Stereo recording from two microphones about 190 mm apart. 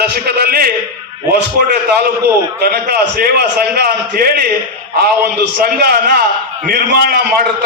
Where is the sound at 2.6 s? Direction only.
55° right (ahead or behind).